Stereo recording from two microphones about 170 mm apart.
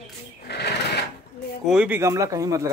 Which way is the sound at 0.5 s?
75° left (ahead or behind).